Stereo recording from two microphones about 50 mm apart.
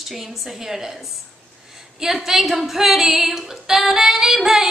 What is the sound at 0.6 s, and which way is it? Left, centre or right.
Speech, centre.